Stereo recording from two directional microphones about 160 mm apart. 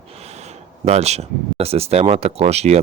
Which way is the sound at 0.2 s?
45° right (ahead or behind).